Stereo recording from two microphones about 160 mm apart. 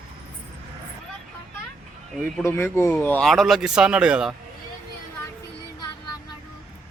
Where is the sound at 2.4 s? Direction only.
15° left (ahead or behind); by 4.3 s 5° right (ahead or behind).